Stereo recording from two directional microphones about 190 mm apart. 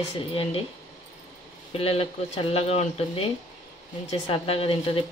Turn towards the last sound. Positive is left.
turn(degrees=30)  # may be behind; listen again after turning